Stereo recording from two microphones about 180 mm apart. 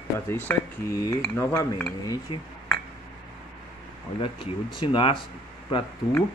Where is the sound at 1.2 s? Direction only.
15° left (ahead or behind).